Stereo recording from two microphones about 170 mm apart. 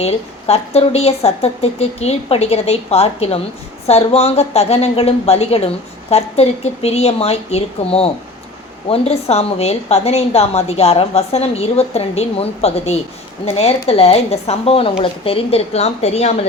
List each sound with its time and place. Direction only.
0.0 s speech: 35° left (ahead or behind)